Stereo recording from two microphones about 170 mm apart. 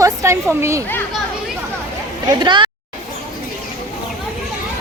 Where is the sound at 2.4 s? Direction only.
25° right (ahead or behind).